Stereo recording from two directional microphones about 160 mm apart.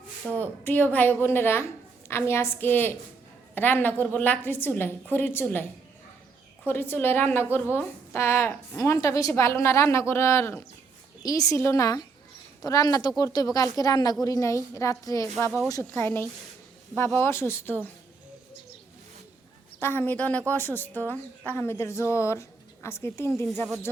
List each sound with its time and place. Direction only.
0.3 s a woman's voice: 10° left (ahead or behind)
6.7 s a woman's voice: 15° left (ahead or behind)
19.8 s a woman's voice: 15° left (ahead or behind)